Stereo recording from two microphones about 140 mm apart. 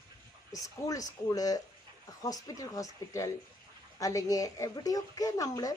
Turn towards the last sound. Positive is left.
turn(degrees=25)  # may be behind; listen again after turning